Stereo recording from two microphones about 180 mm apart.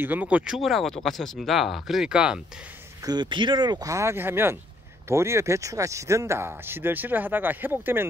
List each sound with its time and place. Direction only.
0.0 s speech: 10° right (ahead or behind)
3.1 s speech: 25° right (ahead or behind)